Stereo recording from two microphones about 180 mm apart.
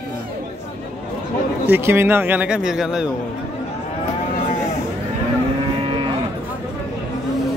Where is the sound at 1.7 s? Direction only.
10° right (ahead or behind).